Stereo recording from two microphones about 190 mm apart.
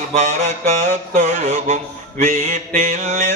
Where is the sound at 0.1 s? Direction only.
35° right (ahead or behind).